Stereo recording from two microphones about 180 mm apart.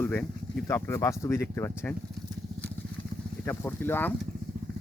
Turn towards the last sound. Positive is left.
turn(degrees=10)  # may be behind; listen again after turning